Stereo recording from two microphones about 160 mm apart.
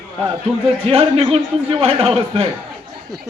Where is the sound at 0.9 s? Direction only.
35° right (ahead or behind).